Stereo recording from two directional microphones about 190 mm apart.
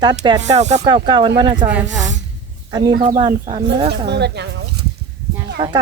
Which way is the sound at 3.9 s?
60° right (ahead or behind).